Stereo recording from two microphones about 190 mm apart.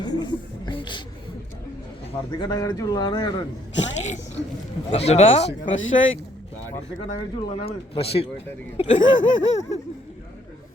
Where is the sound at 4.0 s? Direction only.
40° left (ahead or behind).